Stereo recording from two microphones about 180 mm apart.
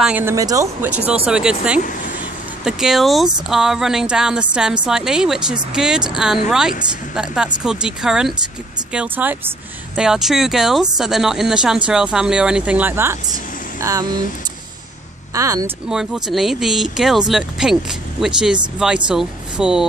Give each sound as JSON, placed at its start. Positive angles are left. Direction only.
{"t": 0.0, "sound": "speech", "side_deg": -10}
{"t": 15.3, "sound": "speech", "side_deg": -15}
{"t": 15.9, "sound": "speech", "side_deg": 0}